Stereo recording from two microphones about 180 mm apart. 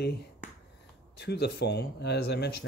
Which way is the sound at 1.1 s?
65° left (ahead or behind).